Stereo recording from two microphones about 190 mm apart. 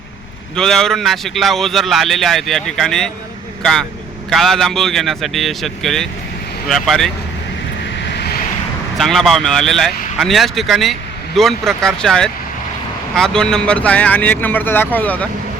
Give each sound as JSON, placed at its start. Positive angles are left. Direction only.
{"t": 0.5, "sound": "a man's voice", "side_deg": 5}
{"t": 8.0, "sound": "vehicle", "side_deg": 60}
{"t": 9.0, "sound": "a man's voice", "side_deg": 0}